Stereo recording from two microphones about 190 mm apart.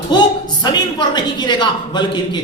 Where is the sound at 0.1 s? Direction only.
20° left (ahead or behind).